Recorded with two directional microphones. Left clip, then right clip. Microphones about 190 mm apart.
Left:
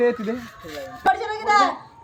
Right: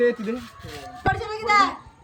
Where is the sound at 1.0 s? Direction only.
15° right (ahead or behind).